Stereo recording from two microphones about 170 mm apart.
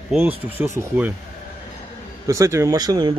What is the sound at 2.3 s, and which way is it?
Speech, 20° right (ahead or behind).